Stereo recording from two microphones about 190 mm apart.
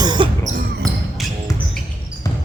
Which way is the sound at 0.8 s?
Centre (ahead or behind).